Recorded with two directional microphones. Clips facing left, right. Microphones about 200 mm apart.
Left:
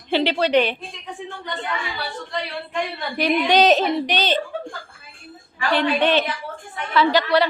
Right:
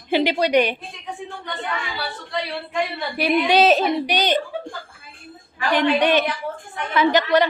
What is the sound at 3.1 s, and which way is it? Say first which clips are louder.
A woman's voice: even; 10° right (ahead or behind).